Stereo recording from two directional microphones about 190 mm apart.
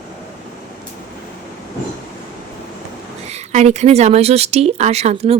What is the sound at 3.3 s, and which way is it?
Speech, 35° right (ahead or behind).